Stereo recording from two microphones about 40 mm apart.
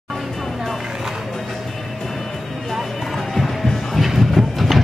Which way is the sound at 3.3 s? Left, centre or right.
Centre.